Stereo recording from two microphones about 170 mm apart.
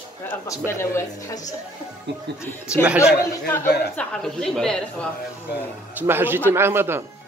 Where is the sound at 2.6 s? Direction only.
5° right (ahead or behind).